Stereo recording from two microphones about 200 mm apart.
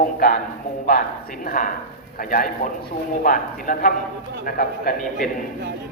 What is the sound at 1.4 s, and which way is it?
A man's voice, 45° left (ahead or behind).